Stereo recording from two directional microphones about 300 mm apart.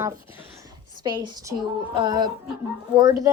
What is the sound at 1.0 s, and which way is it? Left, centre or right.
A woman's voice, centre.